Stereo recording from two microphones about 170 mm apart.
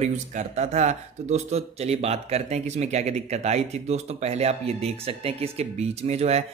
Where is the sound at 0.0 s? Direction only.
40° right (ahead or behind).